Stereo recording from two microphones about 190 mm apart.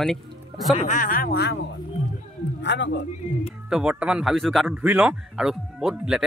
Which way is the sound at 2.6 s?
65° left (ahead or behind).